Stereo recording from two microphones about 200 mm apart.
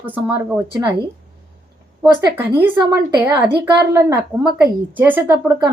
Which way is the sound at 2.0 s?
10° right (ahead or behind).